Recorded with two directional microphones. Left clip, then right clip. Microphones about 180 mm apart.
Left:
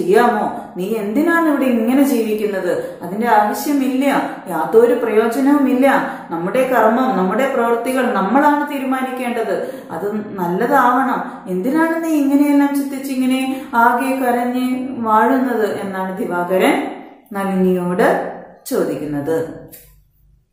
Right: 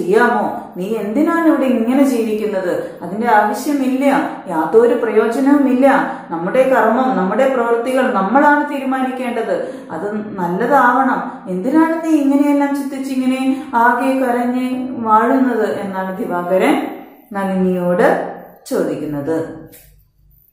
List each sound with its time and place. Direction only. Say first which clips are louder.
0.1 s a woman's voice: right 1 dB; centre (ahead or behind)